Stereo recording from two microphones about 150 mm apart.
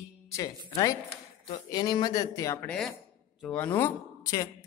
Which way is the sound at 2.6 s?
5° left (ahead or behind).